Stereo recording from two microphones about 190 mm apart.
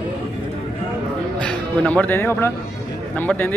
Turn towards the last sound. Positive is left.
turn(degrees=10)  # may be behind; listen again after turning